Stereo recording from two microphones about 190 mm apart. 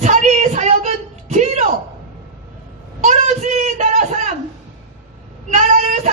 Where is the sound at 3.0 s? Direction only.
40° right (ahead or behind).